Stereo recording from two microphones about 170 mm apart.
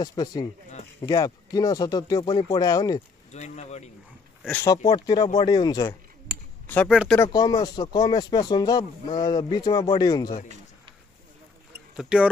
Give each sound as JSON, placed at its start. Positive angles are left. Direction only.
{"t": 0.0, "sound": "speech", "side_deg": 20}
{"t": 3.3, "sound": "speech", "side_deg": 40}
{"t": 4.5, "sound": "speech", "side_deg": 15}
{"t": 6.9, "sound": "speech", "side_deg": -5}
{"t": 7.2, "sound": "speech", "side_deg": 20}
{"t": 12.0, "sound": "speech", "side_deg": -5}